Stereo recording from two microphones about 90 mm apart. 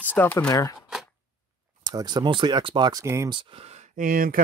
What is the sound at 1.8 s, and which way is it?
Speech, 50° right (ahead or behind).